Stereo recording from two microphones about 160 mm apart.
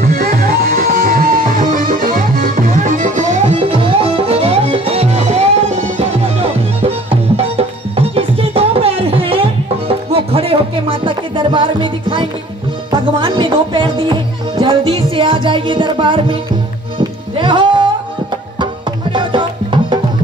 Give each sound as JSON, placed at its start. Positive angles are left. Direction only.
{"t": 0.0, "sound": "music", "side_deg": -65}
{"t": 3.7, "sound": "music", "side_deg": -35}
{"t": 17.4, "sound": "music", "side_deg": -30}
{"t": 19.1, "sound": "music", "side_deg": -30}